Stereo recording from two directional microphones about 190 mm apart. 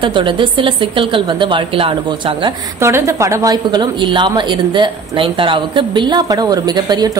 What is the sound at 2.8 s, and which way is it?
A woman's voice, 15° right (ahead or behind).